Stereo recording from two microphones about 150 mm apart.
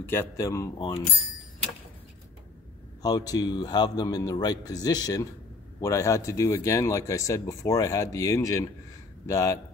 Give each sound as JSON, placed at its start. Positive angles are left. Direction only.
{"t": 0.0, "sound": "speech", "side_deg": 15}
{"t": 0.7, "sound": "speech", "side_deg": 35}
{"t": 3.0, "sound": "speech", "side_deg": 25}